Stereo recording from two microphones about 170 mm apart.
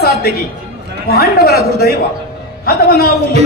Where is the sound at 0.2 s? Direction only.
65° left (ahead or behind).